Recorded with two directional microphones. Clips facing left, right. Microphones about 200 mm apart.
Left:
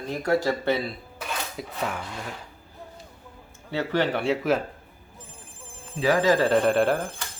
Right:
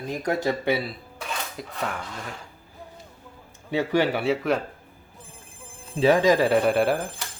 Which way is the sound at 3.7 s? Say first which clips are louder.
Right 2 dB; 10° right (ahead or behind).